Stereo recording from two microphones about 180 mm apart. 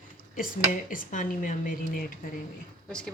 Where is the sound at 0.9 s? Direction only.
45° left (ahead or behind).